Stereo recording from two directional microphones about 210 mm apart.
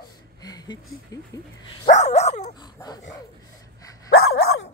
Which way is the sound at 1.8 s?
35° left (ahead or behind).